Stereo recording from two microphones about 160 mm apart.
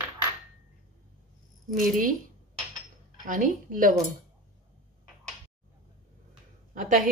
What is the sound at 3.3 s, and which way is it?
Speech, 55° right (ahead or behind).